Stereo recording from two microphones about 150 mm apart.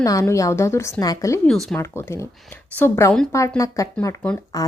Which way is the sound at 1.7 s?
15° left (ahead or behind).